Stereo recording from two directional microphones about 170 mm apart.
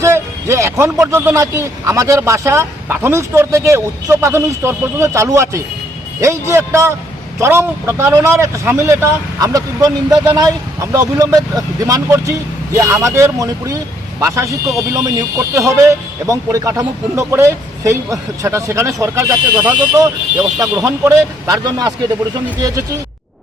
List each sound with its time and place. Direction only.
0.0 s speech: 15° right (ahead or behind)